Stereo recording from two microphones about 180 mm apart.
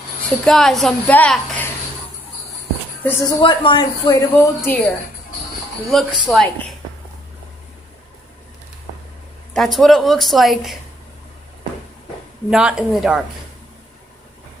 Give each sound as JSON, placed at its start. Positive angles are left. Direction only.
{"t": 0.5, "sound": "speech", "side_deg": 0}
{"t": 3.0, "sound": "speech", "side_deg": 10}
{"t": 3.3, "sound": "a woman's voice", "side_deg": 25}
{"t": 5.9, "sound": "speech", "side_deg": 0}
{"t": 9.5, "sound": "speech", "side_deg": 0}
{"t": 12.4, "sound": "speech", "side_deg": -5}